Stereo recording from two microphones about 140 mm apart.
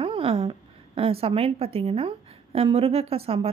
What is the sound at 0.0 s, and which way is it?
A woman's voice, 40° right (ahead or behind).